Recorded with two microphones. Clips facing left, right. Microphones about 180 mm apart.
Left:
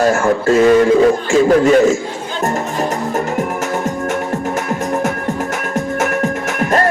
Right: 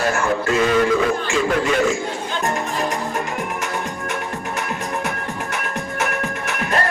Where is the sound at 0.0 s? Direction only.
45° left (ahead or behind).